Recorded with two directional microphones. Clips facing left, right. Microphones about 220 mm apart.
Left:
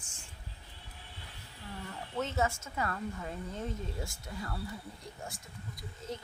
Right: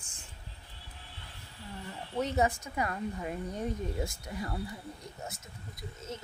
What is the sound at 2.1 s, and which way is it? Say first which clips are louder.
A woman's voice: right 4 dB; 15° right (ahead or behind).